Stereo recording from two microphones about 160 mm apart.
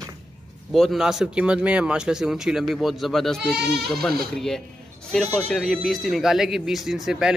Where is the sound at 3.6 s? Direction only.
90° right.